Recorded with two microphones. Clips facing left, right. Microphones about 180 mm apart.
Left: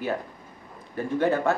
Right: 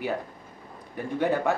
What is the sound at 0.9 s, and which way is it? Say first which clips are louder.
Speech: left 2 dB; 15° right (ahead or behind).